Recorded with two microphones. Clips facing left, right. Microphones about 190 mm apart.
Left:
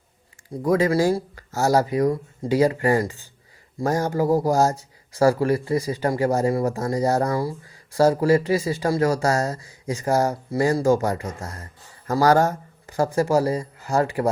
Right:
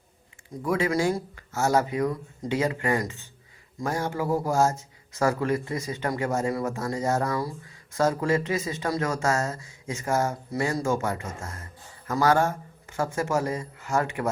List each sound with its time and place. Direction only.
0.5 s a man's voice: 40° left (ahead or behind)